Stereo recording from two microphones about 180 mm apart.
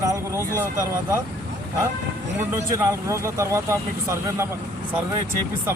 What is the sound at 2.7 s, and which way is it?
Speech, 15° right (ahead or behind).